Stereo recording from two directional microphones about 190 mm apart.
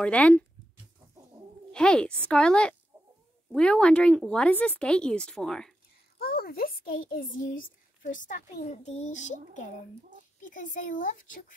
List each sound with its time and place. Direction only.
0.0 s speech: 5° left (ahead or behind)
1.7 s speech: 5° left (ahead or behind)
2.9 s chicken: 20° right (ahead or behind)
3.5 s speech: 5° left (ahead or behind)
6.1 s a child's voice: 55° left (ahead or behind)